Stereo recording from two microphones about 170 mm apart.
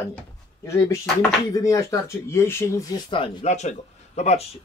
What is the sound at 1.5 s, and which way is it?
Speech, 20° left (ahead or behind).